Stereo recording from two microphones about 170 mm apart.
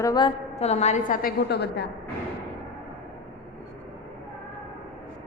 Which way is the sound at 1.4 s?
80° left.